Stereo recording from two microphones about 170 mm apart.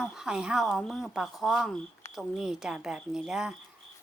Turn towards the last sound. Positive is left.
turn(degrees=-5)  # may be behind; listen again after turning